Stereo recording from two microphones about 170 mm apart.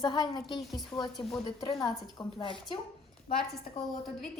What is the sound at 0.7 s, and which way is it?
Speech, centre (ahead or behind).